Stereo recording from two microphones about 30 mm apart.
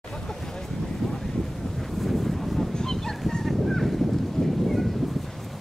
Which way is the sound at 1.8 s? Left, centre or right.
Centre.